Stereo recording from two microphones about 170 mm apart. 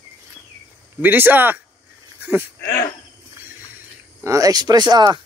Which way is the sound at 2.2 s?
10° right (ahead or behind).